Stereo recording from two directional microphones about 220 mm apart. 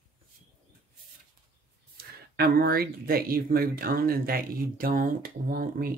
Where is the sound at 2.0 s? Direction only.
45° right (ahead or behind).